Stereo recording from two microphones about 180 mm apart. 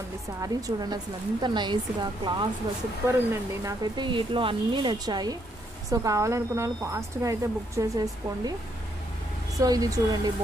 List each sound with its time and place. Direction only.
0.4 s speech: 20° right (ahead or behind)
3.6 s speech: 25° right (ahead or behind)
9.6 s speech: 20° right (ahead or behind)